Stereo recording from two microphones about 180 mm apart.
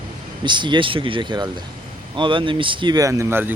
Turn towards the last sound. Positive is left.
turn(degrees=-15)  # may be behind; listen again after turning